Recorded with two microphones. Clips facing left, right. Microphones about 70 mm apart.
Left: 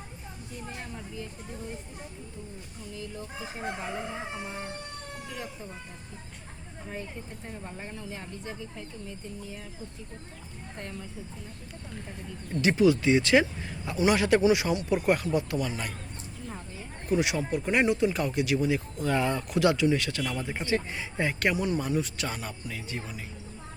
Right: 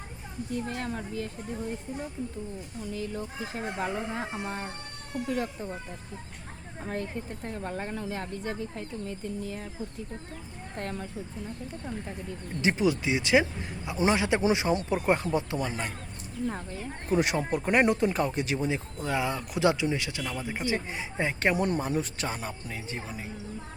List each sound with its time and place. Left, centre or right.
0.5 s speech: right
2.9 s speech: right
3.8 s speech: right
6.8 s speech: right
12.6 s speech: right
13.9 s speech: right
17.1 s speech: right
19.0 s speech: centre
19.5 s speech: right
21.5 s speech: right